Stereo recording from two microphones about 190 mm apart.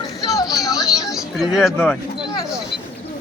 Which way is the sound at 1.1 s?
Centre (ahead or behind).